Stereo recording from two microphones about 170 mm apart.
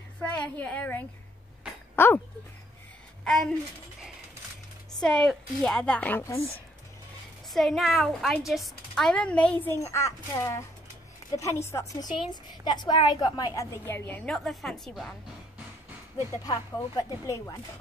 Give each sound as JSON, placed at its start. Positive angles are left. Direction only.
{"t": 0.2, "sound": "a woman's voice", "side_deg": 10}
{"t": 5.0, "sound": "a woman's voice", "side_deg": 5}
{"t": 7.5, "sound": "a woman's voice", "side_deg": 0}
{"t": 13.6, "sound": "a woman's voice", "side_deg": 15}
{"t": 16.4, "sound": "a woman's voice", "side_deg": 20}